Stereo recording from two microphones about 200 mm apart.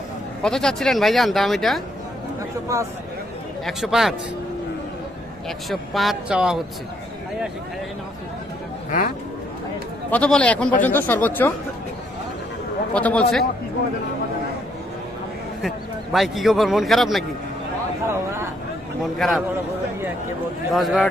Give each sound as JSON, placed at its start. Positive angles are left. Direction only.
{"t": 0.4, "sound": "speech", "side_deg": 5}
{"t": 2.7, "sound": "speech", "side_deg": -15}
{"t": 3.6, "sound": "speech", "side_deg": 0}
{"t": 5.7, "sound": "speech", "side_deg": 0}
{"t": 10.1, "sound": "speech", "side_deg": 5}
{"t": 12.9, "sound": "speech", "side_deg": 5}
{"t": 15.6, "sound": "speech", "side_deg": 0}
{"t": 19.1, "sound": "speech", "side_deg": 0}
{"t": 20.7, "sound": "speech", "side_deg": 0}